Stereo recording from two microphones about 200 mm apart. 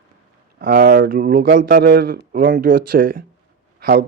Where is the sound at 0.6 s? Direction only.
50° right (ahead or behind).